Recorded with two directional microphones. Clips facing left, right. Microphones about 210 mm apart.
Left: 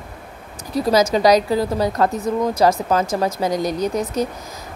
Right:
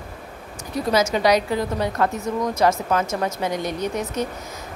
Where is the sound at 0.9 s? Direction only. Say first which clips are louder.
Left 4 dB; 35° left (ahead or behind).